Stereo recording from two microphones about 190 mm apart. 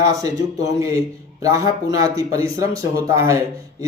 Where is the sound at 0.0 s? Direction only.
20° right (ahead or behind).